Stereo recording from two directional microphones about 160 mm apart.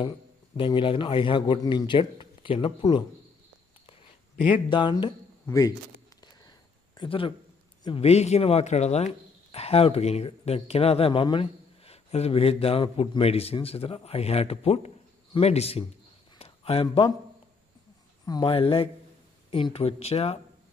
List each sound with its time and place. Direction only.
0.6 s speech: 30° left (ahead or behind)
4.6 s speech: 30° left (ahead or behind)
7.0 s speech: 35° left (ahead or behind)
16.3 s a sound: 40° left (ahead or behind)
16.8 s speech: 30° left (ahead or behind)
18.2 s speech: 25° left (ahead or behind)